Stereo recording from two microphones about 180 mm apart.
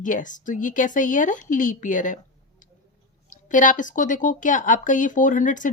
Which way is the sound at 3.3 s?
45° left (ahead or behind).